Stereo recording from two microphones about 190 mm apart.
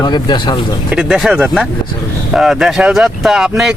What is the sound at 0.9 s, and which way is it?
Speech, centre (ahead or behind).